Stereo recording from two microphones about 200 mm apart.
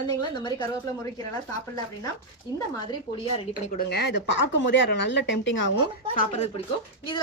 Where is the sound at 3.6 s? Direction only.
45° left (ahead or behind); by 5.6 s 65° left (ahead or behind).